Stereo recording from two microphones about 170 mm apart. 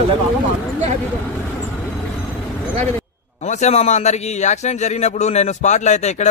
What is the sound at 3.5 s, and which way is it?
A man's voice, 40° left (ahead or behind).